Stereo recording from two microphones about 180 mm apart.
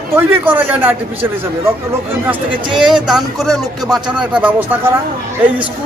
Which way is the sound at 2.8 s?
5° right (ahead or behind).